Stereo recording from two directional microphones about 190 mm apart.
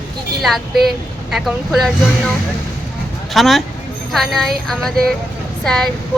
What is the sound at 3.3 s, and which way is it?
Speech, centre (ahead or behind).